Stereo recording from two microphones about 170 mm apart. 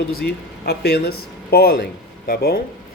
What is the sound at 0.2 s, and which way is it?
Speech, 70° left (ahead or behind).